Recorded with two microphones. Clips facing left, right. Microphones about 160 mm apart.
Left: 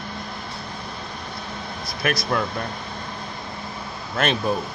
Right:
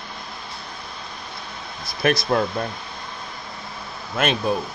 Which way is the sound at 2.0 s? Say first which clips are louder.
Right 4 dB; 25° right (ahead or behind).